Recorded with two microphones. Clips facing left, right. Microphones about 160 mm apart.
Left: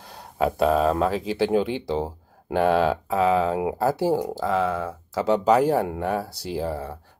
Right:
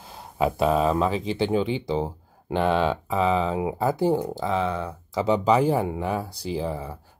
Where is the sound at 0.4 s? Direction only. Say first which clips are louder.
Left 1 dB; centre (ahead or behind).